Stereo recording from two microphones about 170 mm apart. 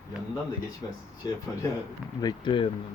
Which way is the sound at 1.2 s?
25° left (ahead or behind).